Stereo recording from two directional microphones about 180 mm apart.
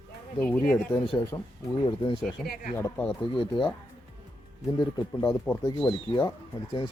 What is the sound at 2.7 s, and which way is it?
Speech, 15° left (ahead or behind).